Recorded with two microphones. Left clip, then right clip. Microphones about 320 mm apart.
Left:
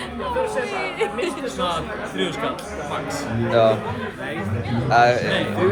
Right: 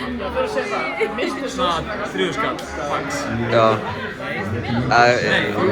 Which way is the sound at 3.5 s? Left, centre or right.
Centre.